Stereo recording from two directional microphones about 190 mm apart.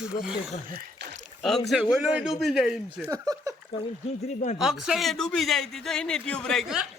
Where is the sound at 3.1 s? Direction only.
20° right (ahead or behind).